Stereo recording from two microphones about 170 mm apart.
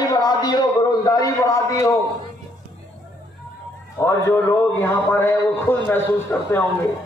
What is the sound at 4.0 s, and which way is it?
A man's voice, 15° left (ahead or behind).